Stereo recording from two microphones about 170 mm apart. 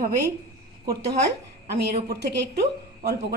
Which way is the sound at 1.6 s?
75° right (ahead or behind).